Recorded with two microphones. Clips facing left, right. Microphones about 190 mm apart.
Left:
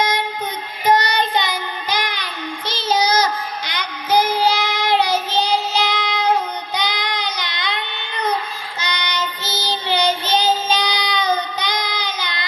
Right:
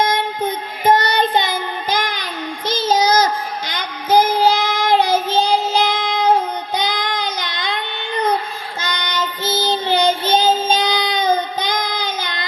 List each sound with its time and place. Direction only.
0.1 s child singing: 50° right (ahead or behind)
8.8 s child singing: 50° right (ahead or behind)